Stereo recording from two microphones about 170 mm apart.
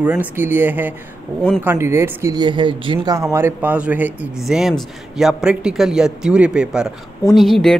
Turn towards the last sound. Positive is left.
turn(degrees=0)  # may be behind; listen again after turning